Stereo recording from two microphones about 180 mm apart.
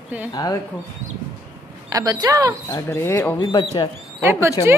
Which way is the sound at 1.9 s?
20° right (ahead or behind).